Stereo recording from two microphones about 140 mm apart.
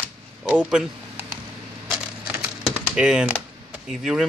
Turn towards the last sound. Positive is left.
turn(degrees=-5)  # may be behind; listen again after turning